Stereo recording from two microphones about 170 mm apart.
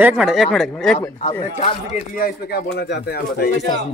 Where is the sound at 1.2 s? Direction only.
35° left (ahead or behind).